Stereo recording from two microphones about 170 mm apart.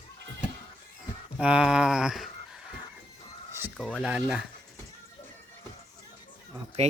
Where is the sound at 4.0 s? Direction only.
5° right (ahead or behind).